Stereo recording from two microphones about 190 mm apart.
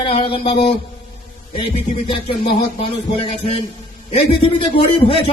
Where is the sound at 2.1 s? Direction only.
30° left (ahead or behind).